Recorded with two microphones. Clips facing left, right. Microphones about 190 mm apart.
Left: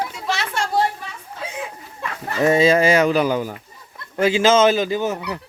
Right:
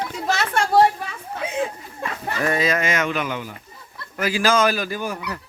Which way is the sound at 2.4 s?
25° left (ahead or behind).